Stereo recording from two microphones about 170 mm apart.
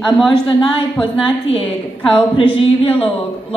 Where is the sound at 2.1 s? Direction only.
30° left (ahead or behind).